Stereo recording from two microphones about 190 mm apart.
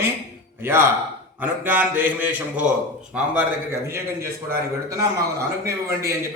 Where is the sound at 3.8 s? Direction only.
15° right (ahead or behind).